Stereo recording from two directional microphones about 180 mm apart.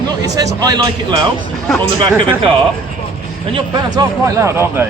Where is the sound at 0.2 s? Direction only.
20° right (ahead or behind).